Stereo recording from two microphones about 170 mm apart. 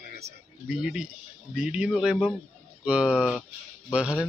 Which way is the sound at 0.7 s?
5° right (ahead or behind).